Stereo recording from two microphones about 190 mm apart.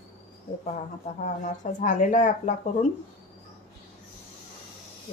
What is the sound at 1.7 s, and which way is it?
Speech, 40° left (ahead or behind).